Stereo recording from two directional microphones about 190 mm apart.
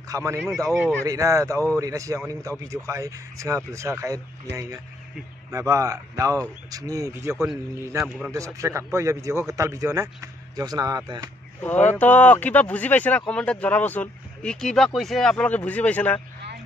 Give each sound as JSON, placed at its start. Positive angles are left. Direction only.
{"t": 0.1, "sound": "speech", "side_deg": -15}
{"t": 0.7, "sound": "speech", "side_deg": 5}
{"t": 1.0, "sound": "speech", "side_deg": -15}
{"t": 11.9, "sound": "speech", "side_deg": 10}